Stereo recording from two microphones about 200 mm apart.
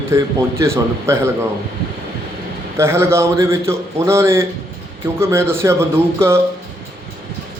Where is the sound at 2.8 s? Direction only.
10° right (ahead or behind).